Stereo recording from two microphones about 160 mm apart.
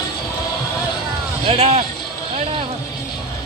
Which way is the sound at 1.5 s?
35° right (ahead or behind).